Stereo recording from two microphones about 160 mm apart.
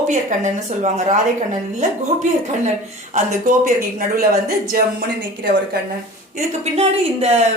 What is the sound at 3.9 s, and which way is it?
A woman's voice, 70° right (ahead or behind).